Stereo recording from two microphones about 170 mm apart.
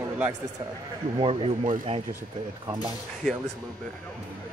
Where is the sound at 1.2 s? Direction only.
30° right (ahead or behind).